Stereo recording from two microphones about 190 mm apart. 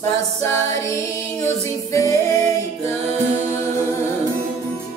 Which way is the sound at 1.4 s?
15° left (ahead or behind).